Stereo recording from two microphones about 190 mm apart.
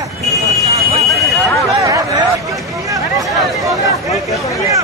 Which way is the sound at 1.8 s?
20° right (ahead or behind).